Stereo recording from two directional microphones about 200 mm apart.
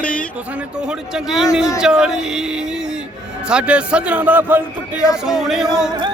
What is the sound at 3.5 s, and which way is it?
Speech, 5° right (ahead or behind).